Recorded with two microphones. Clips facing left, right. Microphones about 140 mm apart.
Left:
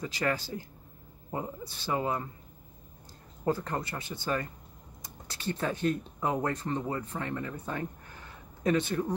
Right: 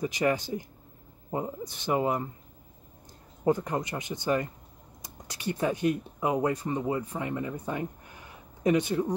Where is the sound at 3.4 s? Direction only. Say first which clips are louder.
Right 4 dB; 15° right (ahead or behind).